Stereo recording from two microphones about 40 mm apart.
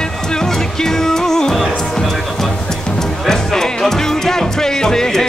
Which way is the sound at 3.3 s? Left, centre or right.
Centre.